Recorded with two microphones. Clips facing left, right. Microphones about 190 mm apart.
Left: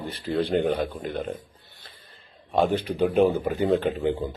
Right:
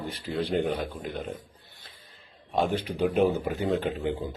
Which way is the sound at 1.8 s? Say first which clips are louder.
Left 5 dB; 10° right (ahead or behind).